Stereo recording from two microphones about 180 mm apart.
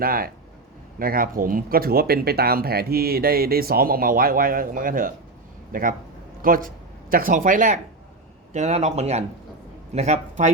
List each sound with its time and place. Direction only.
0.0 s speech: 55° right (ahead or behind)